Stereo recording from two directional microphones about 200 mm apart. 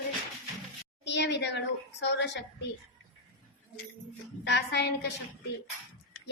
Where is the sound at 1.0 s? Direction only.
60° left (ahead or behind).